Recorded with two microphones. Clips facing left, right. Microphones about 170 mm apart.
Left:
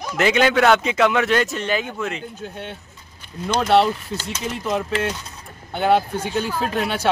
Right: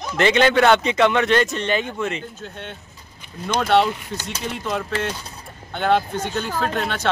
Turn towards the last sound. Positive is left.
turn(degrees=5)  # may be behind; listen again after turning